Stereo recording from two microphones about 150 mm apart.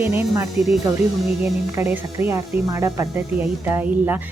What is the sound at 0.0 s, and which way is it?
Speech, 15° right (ahead or behind).